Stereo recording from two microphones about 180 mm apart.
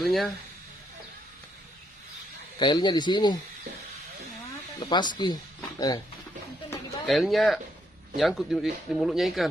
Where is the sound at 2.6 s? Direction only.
25° left (ahead or behind).